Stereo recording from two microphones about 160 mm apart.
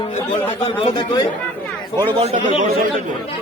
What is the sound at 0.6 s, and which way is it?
Speech, 35° left (ahead or behind).